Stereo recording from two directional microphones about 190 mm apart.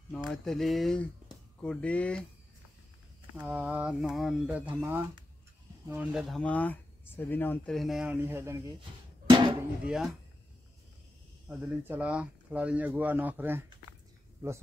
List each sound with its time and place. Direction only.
0.1 s speech: centre (ahead or behind)
3.3 s speech: 10° right (ahead or behind)
5.9 s speech: 5° right (ahead or behind)
9.4 s drum: 20° right (ahead or behind)
9.8 s speech: centre (ahead or behind)
11.4 s speech: 10° right (ahead or behind)